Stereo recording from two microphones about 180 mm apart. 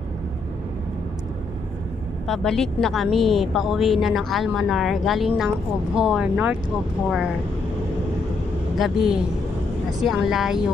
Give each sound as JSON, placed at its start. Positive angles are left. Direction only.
{"t": 2.2, "sound": "a woman's voice", "side_deg": 0}
{"t": 8.7, "sound": "a woman's voice", "side_deg": 0}